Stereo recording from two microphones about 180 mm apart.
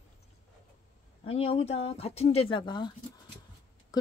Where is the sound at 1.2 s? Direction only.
35° left (ahead or behind).